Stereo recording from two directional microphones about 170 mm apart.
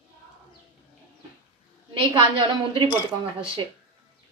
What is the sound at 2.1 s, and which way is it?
Speech, 30° right (ahead or behind).